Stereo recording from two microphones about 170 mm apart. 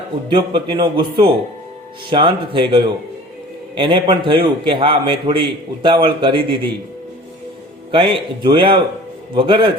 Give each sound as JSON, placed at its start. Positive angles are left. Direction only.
{"t": 0.3, "sound": "a man's voice", "side_deg": -25}
{"t": 7.9, "sound": "a man's voice", "side_deg": -30}